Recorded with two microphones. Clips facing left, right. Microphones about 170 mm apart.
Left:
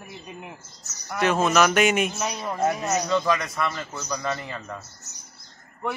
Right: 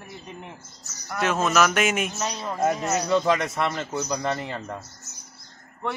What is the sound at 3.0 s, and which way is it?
A man's voice, 20° right (ahead or behind).